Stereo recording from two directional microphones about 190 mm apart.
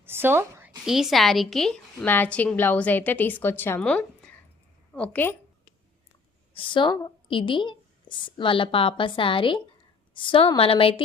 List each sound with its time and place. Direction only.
0.0 s a sound: 10° right (ahead or behind)
0.9 s a woman's voice: centre (ahead or behind)
6.5 s a woman's voice: 25° left (ahead or behind)